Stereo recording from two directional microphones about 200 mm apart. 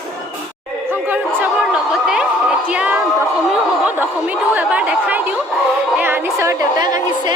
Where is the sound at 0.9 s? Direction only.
10° right (ahead or behind).